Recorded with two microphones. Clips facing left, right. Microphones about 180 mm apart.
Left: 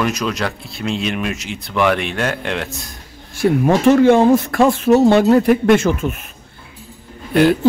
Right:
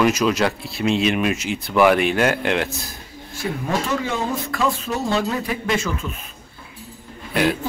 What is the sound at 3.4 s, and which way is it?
Speech, 80° left.